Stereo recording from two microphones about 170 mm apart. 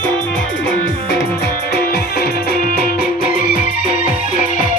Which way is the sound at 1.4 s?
70° left (ahead or behind).